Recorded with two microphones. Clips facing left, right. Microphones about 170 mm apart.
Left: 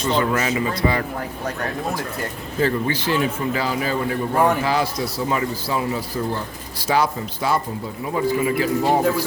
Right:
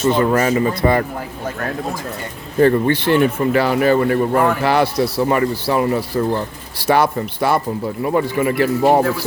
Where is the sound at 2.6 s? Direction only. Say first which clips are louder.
Right 7 dB; 60° right (ahead or behind).